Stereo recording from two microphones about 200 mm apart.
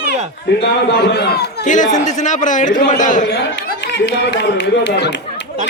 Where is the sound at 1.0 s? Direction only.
55° left (ahead or behind).